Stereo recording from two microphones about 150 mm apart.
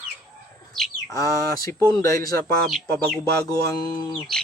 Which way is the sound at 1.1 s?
20° left (ahead or behind).